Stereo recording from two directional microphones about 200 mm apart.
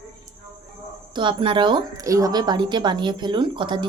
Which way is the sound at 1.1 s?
25° right (ahead or behind).